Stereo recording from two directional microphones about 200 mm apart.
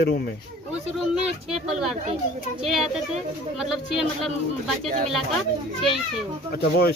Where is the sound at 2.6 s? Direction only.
Centre (ahead or behind).